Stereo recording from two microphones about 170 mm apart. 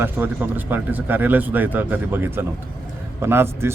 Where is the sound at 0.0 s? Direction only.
10° right (ahead or behind).